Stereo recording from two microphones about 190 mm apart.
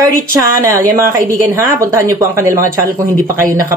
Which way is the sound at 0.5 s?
15° right (ahead or behind).